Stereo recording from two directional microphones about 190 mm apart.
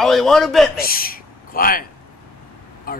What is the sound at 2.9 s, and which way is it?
Speech, 50° left (ahead or behind).